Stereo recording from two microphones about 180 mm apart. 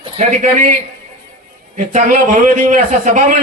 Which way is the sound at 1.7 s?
45° right (ahead or behind).